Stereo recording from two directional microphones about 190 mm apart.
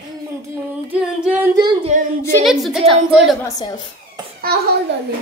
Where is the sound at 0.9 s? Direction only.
5° right (ahead or behind).